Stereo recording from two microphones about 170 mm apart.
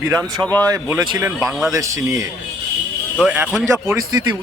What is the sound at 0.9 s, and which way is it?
Speech, 5° right (ahead or behind).